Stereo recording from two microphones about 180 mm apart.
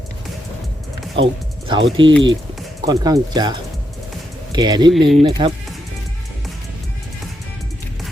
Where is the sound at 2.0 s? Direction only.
25° right (ahead or behind).